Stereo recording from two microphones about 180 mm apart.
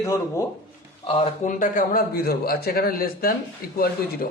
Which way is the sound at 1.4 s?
45° left (ahead or behind).